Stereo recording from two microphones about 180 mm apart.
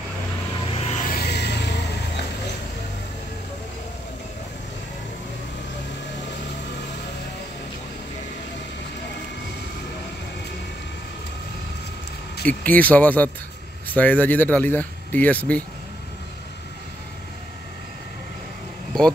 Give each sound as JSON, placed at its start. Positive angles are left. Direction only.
{"t": 0.8, "sound": "vehicle", "side_deg": 45}
{"t": 12.4, "sound": "speech", "side_deg": 10}